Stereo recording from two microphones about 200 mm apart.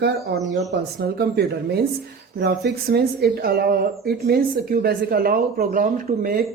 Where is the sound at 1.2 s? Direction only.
55° right (ahead or behind).